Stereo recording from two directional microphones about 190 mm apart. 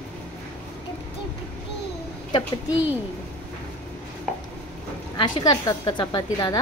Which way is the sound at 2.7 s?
10° right (ahead or behind).